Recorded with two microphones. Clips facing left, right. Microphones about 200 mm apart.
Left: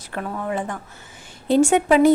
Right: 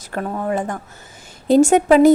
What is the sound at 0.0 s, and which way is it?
A woman's voice, 40° right (ahead or behind).